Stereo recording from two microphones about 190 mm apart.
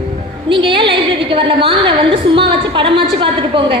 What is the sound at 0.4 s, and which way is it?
A woman's voice, 25° right (ahead or behind).